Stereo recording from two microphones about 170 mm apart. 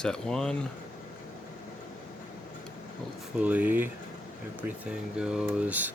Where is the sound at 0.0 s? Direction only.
5° left (ahead or behind).